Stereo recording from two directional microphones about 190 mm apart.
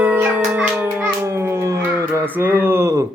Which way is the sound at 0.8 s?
10° right (ahead or behind).